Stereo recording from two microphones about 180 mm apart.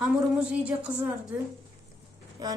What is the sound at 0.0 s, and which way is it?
A woman's voice, 5° right (ahead or behind).